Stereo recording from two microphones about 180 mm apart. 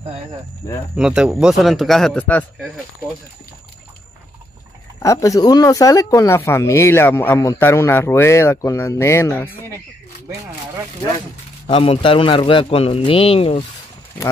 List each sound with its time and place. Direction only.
0.9 s a man's voice: 5° right (ahead or behind)
5.0 s speech: 20° left (ahead or behind)
11.6 s a man's voice: 30° left (ahead or behind)